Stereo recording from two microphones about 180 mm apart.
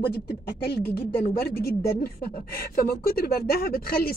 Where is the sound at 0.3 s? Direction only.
65° left (ahead or behind).